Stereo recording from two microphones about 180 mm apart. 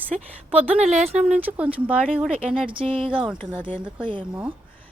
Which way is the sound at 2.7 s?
30° right (ahead or behind).